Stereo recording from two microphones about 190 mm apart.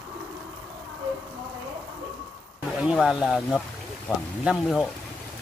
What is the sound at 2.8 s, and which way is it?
Speech, 5° right (ahead or behind).